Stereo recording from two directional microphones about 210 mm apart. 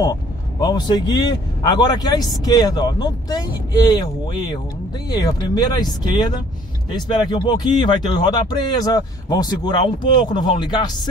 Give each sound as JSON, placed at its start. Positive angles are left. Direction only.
{"t": 0.0, "sound": "speech", "side_deg": 20}
{"t": 6.9, "sound": "speech", "side_deg": 20}